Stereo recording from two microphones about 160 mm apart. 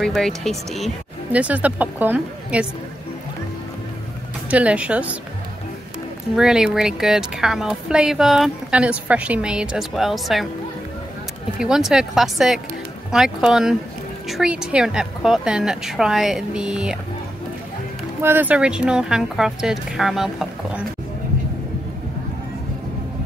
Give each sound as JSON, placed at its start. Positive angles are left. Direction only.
{"t": 0.0, "sound": "speech", "side_deg": 0}
{"t": 4.5, "sound": "speech", "side_deg": -10}
{"t": 6.3, "sound": "a woman's voice", "side_deg": -5}
{"t": 11.5, "sound": "a woman's voice", "side_deg": -5}
{"t": 18.2, "sound": "a woman's voice", "side_deg": -10}